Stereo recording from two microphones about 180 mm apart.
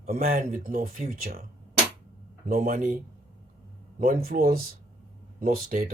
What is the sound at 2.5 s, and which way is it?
Speech, 50° right (ahead or behind).